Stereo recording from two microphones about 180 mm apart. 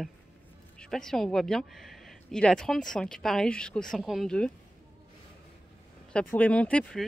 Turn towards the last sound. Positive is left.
turn(degrees=5)  # may be behind; listen again after turning